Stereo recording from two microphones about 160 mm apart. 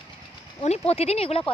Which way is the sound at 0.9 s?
40° left (ahead or behind).